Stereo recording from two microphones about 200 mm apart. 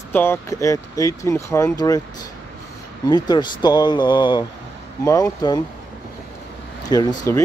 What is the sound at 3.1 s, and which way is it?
Speech, 20° left (ahead or behind).